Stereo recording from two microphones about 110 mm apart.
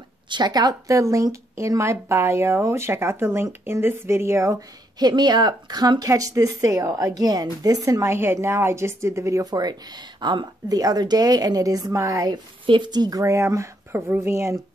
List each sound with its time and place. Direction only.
0.3 s a woman's voice: 40° right (ahead or behind)
12.6 s a woman's voice: 45° right (ahead or behind)
13.2 s speech: 25° right (ahead or behind)